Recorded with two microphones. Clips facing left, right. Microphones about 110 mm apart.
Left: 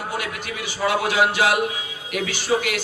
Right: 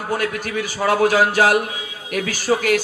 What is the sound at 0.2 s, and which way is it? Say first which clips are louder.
A man's voice: right 6 dB; 45° right (ahead or behind).